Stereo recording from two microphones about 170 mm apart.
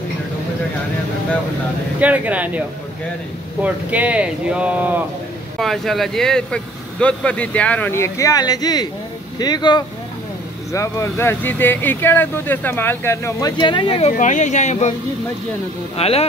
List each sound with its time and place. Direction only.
2.0 s speech: 10° right (ahead or behind)
3.6 s speech: 10° right (ahead or behind)
5.6 s speech: centre (ahead or behind); by 14.1 s 35° left (ahead or behind)
14.1 s speech: 45° left (ahead or behind)
16.0 s speech: 35° left (ahead or behind)